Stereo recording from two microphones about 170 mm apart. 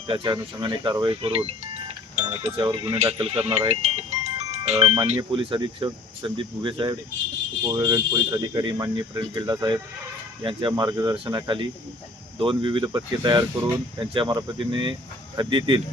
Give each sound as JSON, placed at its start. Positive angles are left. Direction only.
{"t": 0.1, "sound": "speech", "side_deg": -25}